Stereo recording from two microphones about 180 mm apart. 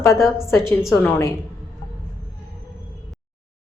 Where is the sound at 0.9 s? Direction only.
15° left (ahead or behind).